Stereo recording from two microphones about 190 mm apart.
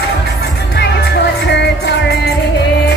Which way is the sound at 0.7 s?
60° left (ahead or behind).